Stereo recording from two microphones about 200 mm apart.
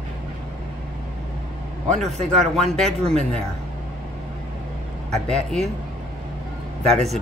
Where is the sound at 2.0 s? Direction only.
35° right (ahead or behind).